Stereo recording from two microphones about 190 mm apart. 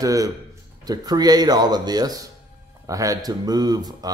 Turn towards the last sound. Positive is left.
turn(degrees=-20)  # may be behind; listen again after turning